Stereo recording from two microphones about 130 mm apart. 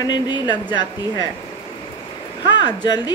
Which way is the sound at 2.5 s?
35° left (ahead or behind).